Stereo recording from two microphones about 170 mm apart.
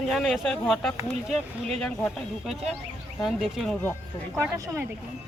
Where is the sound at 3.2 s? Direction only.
Centre (ahead or behind).